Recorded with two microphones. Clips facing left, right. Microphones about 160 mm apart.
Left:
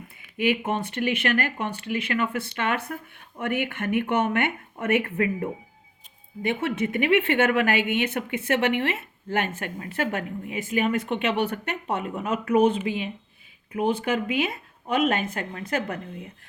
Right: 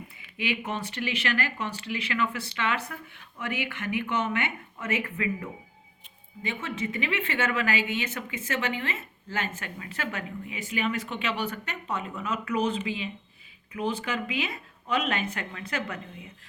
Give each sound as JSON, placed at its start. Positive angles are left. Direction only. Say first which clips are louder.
{"t": 0.2, "sound": "a woman's voice", "louder": "left 7 dB", "side_deg": 50}
{"t": 6.4, "sound": "a woman's voice", "louder": "left 7 dB", "side_deg": 60}